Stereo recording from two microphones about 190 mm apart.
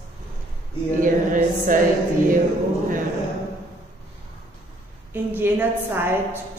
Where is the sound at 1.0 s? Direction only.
45° right (ahead or behind).